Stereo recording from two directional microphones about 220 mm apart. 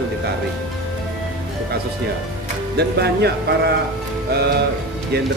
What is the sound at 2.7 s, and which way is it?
Speech, 50° right (ahead or behind).